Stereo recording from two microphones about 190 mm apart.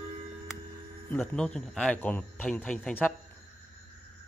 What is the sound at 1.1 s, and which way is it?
Speech, 10° left (ahead or behind).